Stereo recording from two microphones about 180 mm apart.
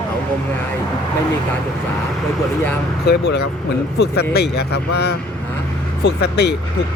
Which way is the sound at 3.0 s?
65° left (ahead or behind).